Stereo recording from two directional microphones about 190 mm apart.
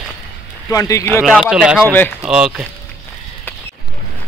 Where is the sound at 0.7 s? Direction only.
15° left (ahead or behind).